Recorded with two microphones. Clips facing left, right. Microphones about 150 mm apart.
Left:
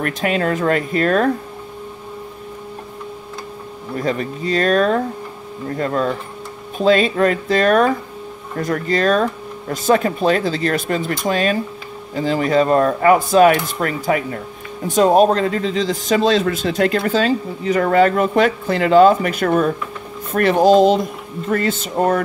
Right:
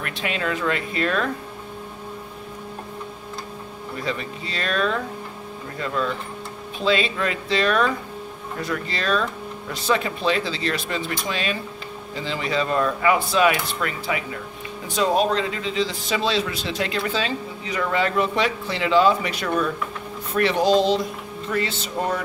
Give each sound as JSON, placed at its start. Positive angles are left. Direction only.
{"t": 0.0, "sound": "a man's voice", "side_deg": 45}
{"t": 4.0, "sound": "a man's voice", "side_deg": 45}